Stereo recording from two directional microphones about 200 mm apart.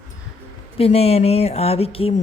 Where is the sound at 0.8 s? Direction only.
30° left (ahead or behind).